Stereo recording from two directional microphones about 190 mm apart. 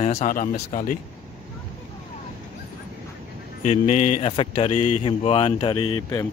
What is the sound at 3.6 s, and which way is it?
Speech, 35° left (ahead or behind).